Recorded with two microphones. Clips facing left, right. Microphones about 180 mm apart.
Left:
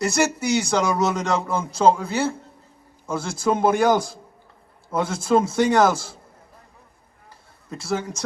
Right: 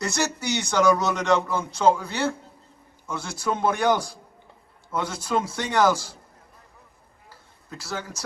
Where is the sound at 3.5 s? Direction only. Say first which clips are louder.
Left 4 dB; 45° left (ahead or behind).